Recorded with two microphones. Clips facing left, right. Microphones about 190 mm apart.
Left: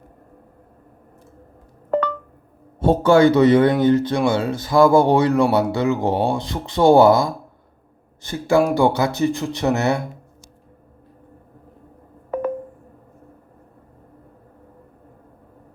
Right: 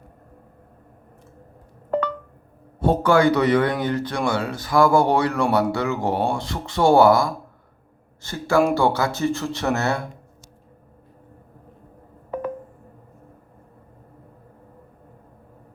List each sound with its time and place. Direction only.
2.8 s speech: 25° left (ahead or behind)